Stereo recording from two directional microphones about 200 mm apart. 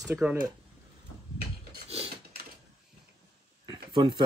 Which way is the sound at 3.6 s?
25° right (ahead or behind).